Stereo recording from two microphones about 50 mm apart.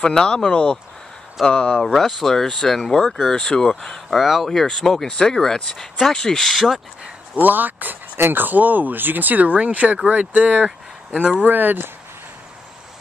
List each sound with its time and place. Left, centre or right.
0.0 s speech: centre
1.8 s speech: centre
4.2 s speech: centre
4.5 s speech: centre
7.3 s speech: right
11.1 s speech: right
11.4 s speech: right